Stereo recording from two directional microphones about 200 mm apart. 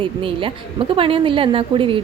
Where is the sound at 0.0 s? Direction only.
25° right (ahead or behind).